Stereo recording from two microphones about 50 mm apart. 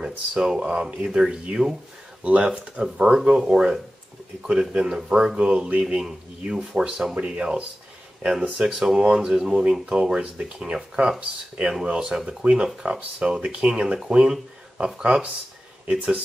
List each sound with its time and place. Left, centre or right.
0.0 s speech: centre
2.2 s speech: right